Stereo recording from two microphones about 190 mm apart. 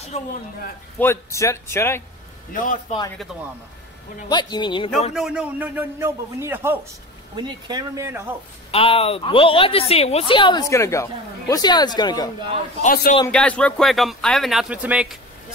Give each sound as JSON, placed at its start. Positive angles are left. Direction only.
{"t": 0.1, "sound": "speech", "side_deg": 35}
{"t": 0.9, "sound": "speech", "side_deg": 15}
{"t": 2.5, "sound": "a man's voice", "side_deg": 45}
{"t": 4.3, "sound": "a woman's voice", "side_deg": 25}
{"t": 5.1, "sound": "a man's voice", "side_deg": -5}
{"t": 7.3, "sound": "a man's voice", "side_deg": -25}
{"t": 8.7, "sound": "a woman's voice", "side_deg": 30}
{"t": 12.8, "sound": "a man's voice", "side_deg": 50}
{"t": 13.3, "sound": "speech", "side_deg": 5}